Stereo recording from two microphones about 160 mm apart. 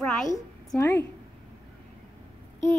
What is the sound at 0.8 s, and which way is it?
Speech, 15° left (ahead or behind).